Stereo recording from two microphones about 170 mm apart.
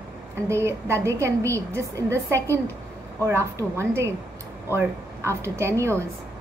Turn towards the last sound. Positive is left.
turn(degrees=-15)  # may be behind; listen again after turning